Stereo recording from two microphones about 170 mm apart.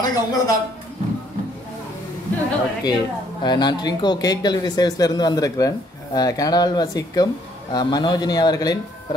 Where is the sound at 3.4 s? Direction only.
25° left (ahead or behind).